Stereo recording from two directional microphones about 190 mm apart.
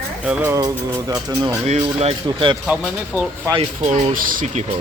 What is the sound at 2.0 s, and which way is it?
Speech, 30° right (ahead or behind).